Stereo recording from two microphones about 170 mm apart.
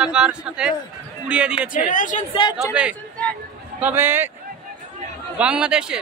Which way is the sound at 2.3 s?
30° left (ahead or behind).